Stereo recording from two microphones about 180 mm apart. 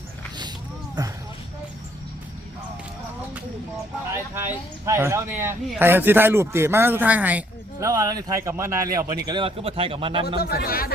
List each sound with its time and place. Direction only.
1.0 s speech: 20° right (ahead or behind)
4.9 s a man's voice: 15° right (ahead or behind)
10.2 s speech: 60° left (ahead or behind)